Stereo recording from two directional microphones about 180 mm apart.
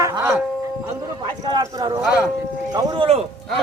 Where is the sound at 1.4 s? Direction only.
25° right (ahead or behind).